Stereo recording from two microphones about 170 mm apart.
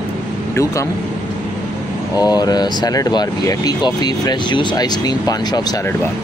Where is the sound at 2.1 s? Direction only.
20° left (ahead or behind).